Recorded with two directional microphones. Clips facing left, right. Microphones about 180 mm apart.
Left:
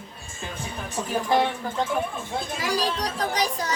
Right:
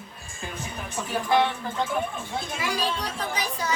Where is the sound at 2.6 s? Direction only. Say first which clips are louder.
Left 3 dB; 35° left (ahead or behind).